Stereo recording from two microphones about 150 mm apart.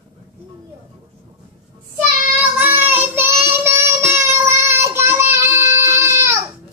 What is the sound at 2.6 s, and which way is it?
Child singing, 15° right (ahead or behind).